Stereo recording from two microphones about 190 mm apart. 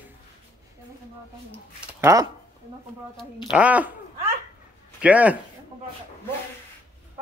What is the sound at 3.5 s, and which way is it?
Speech, 5° right (ahead or behind).